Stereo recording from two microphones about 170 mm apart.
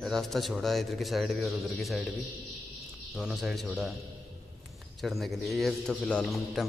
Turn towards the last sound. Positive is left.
turn(degrees=5)  # may be behind; listen again after turning